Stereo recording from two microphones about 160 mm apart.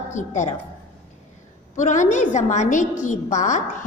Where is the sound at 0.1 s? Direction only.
50° left (ahead or behind).